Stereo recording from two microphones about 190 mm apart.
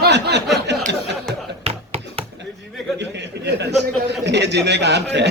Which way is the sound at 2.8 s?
Centre (ahead or behind).